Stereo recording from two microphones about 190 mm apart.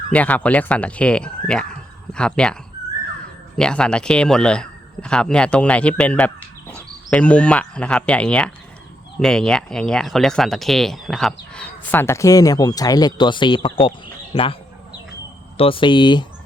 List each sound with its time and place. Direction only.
0.1 s speech: 5° left (ahead or behind)
3.6 s speech: 5° left (ahead or behind)
6.7 s cricket: 5° left (ahead or behind)
9.2 s speech: 5° left (ahead or behind); by 14.5 s 20° left (ahead or behind)
15.5 s speech: 30° left (ahead or behind)